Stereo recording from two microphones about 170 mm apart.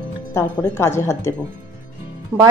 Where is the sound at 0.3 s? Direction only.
15° left (ahead or behind).